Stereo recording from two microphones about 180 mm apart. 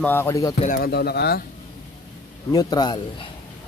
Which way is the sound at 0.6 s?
55° left (ahead or behind).